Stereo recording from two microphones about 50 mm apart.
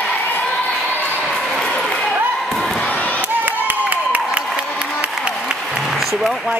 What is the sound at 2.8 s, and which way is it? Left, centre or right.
Crowd, left.